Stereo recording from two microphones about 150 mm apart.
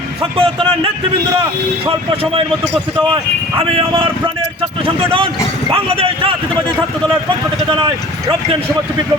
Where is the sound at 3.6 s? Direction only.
35° right (ahead or behind).